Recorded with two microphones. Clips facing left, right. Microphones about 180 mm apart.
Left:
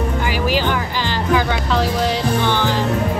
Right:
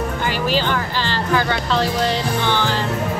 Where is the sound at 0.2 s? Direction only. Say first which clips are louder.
Even; 10° left (ahead or behind).